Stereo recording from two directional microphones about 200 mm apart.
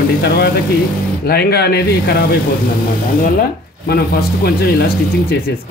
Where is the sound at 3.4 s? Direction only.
50° left (ahead or behind).